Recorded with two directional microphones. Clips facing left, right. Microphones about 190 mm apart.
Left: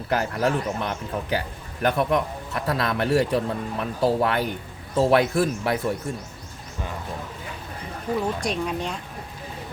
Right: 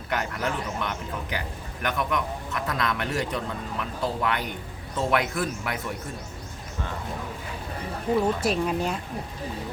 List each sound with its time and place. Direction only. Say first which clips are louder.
0.1 s a man's voice: left 6 dB; 30° left (ahead or behind)
8.4 s speech: right 2 dB; 5° right (ahead or behind)